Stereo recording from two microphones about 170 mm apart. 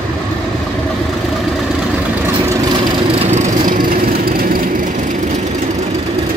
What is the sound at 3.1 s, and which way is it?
Vehicle, 40° right (ahead or behind).